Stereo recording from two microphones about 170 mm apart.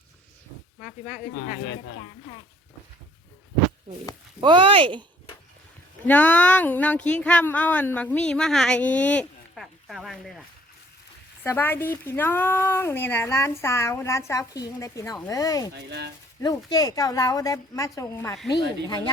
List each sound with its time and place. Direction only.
0.8 s speech: 5° right (ahead or behind)
1.4 s speech: 90° left
4.4 s speech: 25° right (ahead or behind)
6.1 s speech: 10° left (ahead or behind)
11.4 s a woman's voice: 10° left (ahead or behind)
15.7 s speech: 80° right
16.4 s a woman's voice: 25° left (ahead or behind)